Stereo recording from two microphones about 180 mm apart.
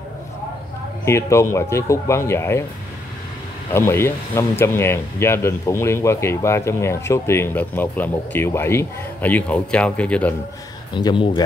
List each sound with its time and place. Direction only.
1.0 s speech: 15° left (ahead or behind)
3.7 s speech: 15° left (ahead or behind)
11.0 s speech: 25° left (ahead or behind)